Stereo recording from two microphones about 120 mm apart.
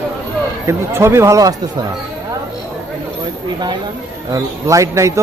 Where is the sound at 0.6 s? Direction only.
20° right (ahead or behind).